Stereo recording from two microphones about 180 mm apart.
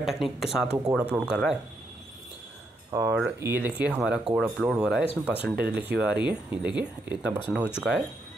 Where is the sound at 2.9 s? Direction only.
15° right (ahead or behind).